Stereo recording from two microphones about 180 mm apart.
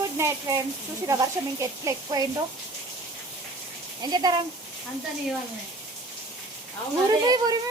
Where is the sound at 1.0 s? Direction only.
20° right (ahead or behind).